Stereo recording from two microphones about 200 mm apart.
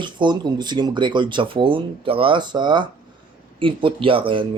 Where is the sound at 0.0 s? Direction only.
25° right (ahead or behind).